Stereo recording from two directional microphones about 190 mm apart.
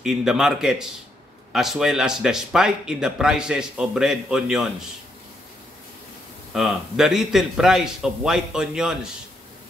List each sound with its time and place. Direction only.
0.0 s speech: centre (ahead or behind)
6.5 s speech: centre (ahead or behind)